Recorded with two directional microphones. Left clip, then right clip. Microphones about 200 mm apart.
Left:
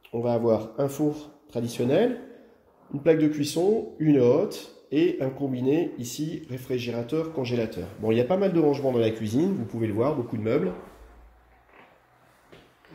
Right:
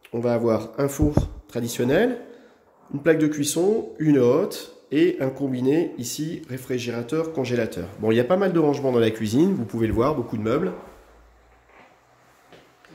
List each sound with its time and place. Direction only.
0.1 s speech: 35° right (ahead or behind)